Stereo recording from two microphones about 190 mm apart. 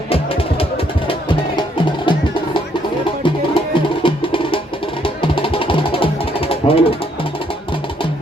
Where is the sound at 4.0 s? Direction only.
25° left (ahead or behind).